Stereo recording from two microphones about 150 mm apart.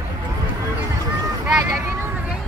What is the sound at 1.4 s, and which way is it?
Vehicle, 10° right (ahead or behind).